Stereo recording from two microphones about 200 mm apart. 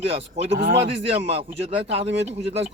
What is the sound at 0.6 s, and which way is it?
Speech, 55° right (ahead or behind).